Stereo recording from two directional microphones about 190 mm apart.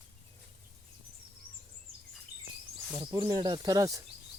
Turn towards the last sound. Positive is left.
turn(degrees=-20)  # may be behind; listen again after turning